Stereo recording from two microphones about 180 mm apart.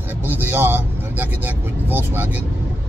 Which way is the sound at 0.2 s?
10° right (ahead or behind).